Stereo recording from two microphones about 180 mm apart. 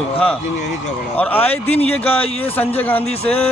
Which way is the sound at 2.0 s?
35° left (ahead or behind).